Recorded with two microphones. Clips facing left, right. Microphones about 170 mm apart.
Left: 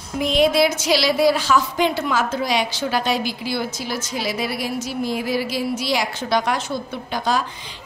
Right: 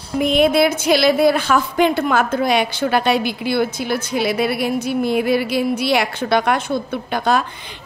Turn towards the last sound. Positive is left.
turn(degrees=-60)  # may be behind; listen again after turning